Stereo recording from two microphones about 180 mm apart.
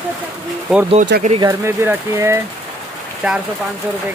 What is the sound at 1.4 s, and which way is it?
Speech, 15° right (ahead or behind).